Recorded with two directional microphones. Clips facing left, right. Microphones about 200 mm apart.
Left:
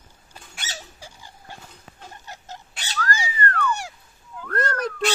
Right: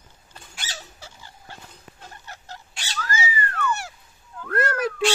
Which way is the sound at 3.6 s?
15° left (ahead or behind).